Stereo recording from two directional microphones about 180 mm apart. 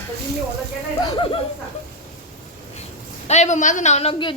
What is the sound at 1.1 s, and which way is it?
Speech, 30° left (ahead or behind).